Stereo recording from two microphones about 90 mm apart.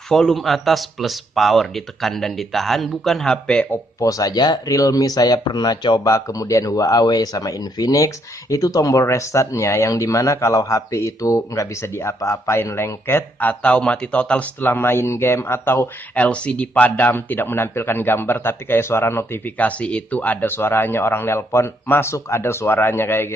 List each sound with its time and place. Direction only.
0.1 s speech: 5° left (ahead or behind)
4.0 s speech: 40° left (ahead or behind)
6.1 s speech: 40° left (ahead or behind)
16.2 s speech: 15° left (ahead or behind)